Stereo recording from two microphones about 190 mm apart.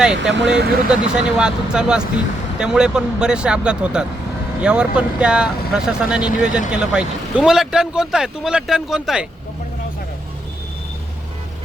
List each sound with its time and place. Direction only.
0.3 s speech: 70° right (ahead or behind)
0.9 s speech: 5° right (ahead or behind)